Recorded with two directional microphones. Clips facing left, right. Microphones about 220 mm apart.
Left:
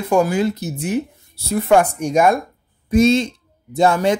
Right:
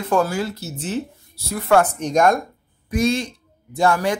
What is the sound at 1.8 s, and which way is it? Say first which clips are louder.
Speech: left 1 dB; 10° left (ahead or behind).